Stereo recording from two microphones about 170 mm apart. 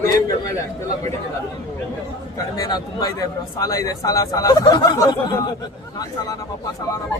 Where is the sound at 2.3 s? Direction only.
20° left (ahead or behind).